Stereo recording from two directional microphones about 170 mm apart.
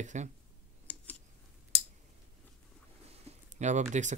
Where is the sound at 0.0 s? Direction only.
45° right (ahead or behind).